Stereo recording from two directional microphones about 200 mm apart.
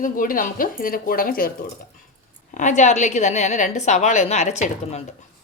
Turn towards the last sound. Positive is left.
turn(degrees=35)  # may be behind; listen again after turning